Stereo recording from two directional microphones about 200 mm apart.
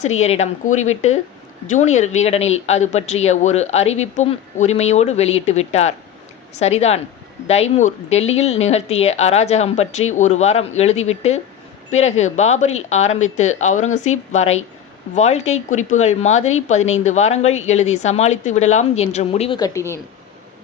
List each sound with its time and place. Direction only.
0.0 s speech: 35° left (ahead or behind)
19.5 s speech: 15° left (ahead or behind)